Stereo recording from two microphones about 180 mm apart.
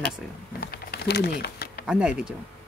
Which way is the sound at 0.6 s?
60° left (ahead or behind).